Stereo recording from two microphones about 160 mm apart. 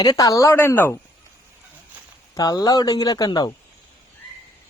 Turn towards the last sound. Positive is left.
turn(degrees=25)  # may be behind; listen again after turning